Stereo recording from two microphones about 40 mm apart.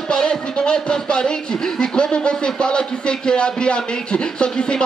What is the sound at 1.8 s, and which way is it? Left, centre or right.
Speech, left.